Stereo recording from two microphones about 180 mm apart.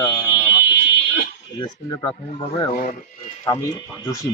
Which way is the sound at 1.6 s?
25° left (ahead or behind).